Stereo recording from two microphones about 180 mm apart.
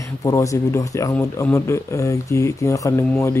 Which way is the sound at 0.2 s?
15° left (ahead or behind).